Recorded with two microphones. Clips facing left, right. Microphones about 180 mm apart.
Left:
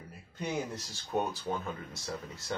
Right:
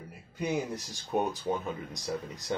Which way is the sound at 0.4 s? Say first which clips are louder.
Right 4 dB; 15° right (ahead or behind).